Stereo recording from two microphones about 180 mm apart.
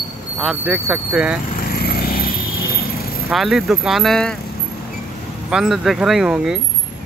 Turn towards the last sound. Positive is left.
turn(degrees=-5)  # may be behind; listen again after turning